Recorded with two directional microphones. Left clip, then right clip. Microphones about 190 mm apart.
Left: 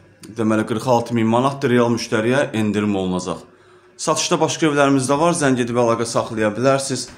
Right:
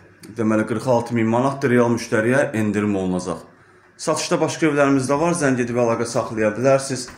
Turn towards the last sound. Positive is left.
turn(degrees=20)  # may be behind; listen again after turning